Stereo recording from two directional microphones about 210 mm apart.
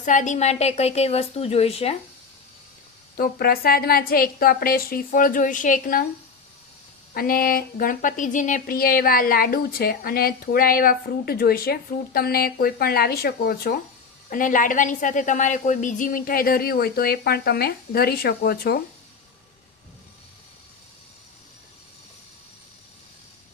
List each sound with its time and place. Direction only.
0.0 s a woman's voice: 35° left (ahead or behind)
3.2 s speech: 45° left (ahead or behind)
7.1 s speech: 45° left (ahead or behind)